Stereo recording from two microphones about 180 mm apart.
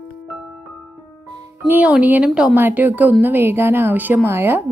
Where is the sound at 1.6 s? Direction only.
10° right (ahead or behind).